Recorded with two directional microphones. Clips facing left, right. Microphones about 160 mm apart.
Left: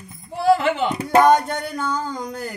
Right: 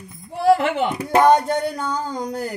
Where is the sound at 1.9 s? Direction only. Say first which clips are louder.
Right 1 dB; 35° right (ahead or behind).